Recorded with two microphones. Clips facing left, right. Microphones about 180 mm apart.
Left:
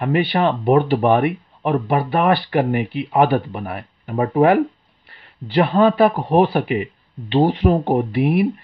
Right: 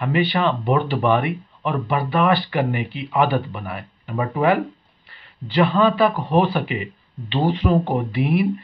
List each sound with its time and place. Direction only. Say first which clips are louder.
0.0 s speech: left 2 dB; 50° left (ahead or behind)
7.7 s speech: left 2 dB; 35° left (ahead or behind)
8.1 s speech: left 3 dB; 50° left (ahead or behind)